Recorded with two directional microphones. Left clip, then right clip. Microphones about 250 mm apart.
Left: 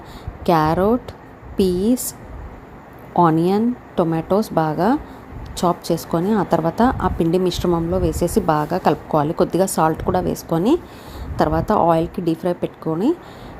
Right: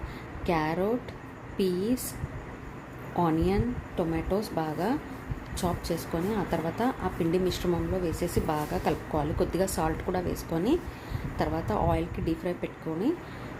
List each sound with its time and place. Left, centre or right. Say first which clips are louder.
0.4 s speech: left 12 dB; left
3.2 s speech: left 11 dB; left